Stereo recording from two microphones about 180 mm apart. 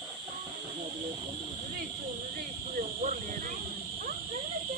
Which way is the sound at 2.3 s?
50° right (ahead or behind).